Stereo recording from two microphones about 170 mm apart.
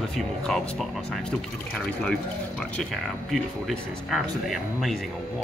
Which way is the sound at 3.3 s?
Centre (ahead or behind).